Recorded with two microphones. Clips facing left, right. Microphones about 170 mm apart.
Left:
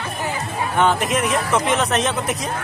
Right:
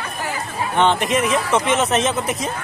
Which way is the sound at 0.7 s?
5° left (ahead or behind).